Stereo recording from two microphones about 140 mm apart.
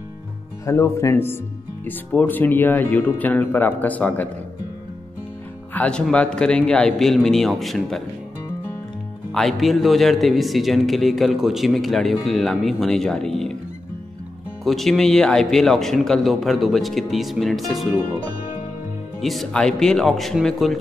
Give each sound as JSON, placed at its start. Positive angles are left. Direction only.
{"t": 0.7, "sound": "speech", "side_deg": 20}
{"t": 5.7, "sound": "a man's voice", "side_deg": 10}
{"t": 9.3, "sound": "a man's voice", "side_deg": 0}
{"t": 14.6, "sound": "a man's voice", "side_deg": 0}
{"t": 19.2, "sound": "a man's voice", "side_deg": 0}